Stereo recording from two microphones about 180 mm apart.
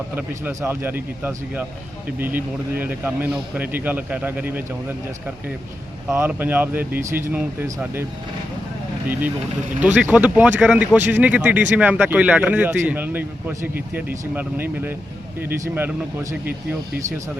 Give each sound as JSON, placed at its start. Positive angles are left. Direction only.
{"t": 0.2, "sound": "speech", "side_deg": -10}
{"t": 6.1, "sound": "speech", "side_deg": -10}
{"t": 9.8, "sound": "speech", "side_deg": -10}